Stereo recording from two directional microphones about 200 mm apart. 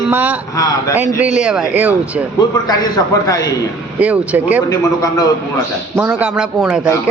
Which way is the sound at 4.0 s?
5° right (ahead or behind).